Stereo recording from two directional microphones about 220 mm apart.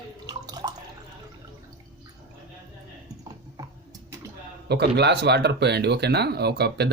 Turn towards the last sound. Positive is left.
turn(degrees=-50)  # may be behind; listen again after turning